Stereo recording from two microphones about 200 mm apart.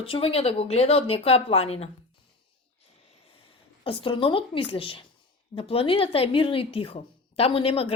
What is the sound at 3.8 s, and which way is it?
Speech, 25° left (ahead or behind).